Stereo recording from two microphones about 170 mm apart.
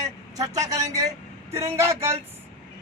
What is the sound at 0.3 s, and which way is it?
Speech, 20° right (ahead or behind).